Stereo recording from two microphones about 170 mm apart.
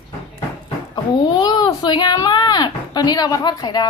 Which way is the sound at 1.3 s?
25° left (ahead or behind).